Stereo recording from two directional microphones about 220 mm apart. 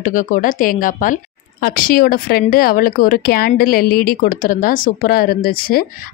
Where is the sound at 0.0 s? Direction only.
35° left (ahead or behind).